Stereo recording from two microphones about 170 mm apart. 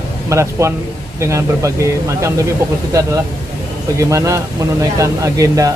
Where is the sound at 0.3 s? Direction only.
15° right (ahead or behind).